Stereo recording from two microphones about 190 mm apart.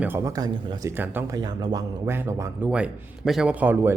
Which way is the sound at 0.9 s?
10° right (ahead or behind).